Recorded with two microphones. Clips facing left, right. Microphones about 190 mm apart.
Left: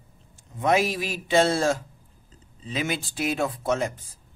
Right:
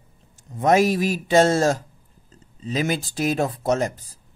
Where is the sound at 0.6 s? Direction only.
40° right (ahead or behind).